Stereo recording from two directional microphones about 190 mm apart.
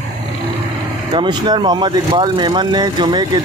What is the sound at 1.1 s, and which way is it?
Speech, 25° right (ahead or behind).